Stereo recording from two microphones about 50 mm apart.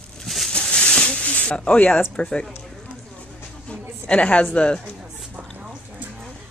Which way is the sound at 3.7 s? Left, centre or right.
Left.